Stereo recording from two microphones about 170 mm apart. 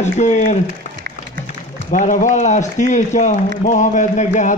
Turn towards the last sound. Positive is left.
turn(degrees=45)  # may be behind; listen again after turning